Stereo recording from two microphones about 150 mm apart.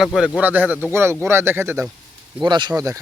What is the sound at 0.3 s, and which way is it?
Speech, 10° right (ahead or behind).